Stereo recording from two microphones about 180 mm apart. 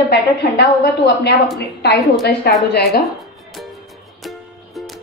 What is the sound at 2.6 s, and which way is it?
Speech, centre (ahead or behind).